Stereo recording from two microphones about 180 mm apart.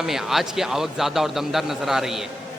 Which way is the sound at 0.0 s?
Centre (ahead or behind).